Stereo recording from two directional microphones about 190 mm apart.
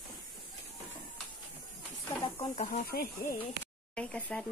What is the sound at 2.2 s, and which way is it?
Snake, 30° left (ahead or behind).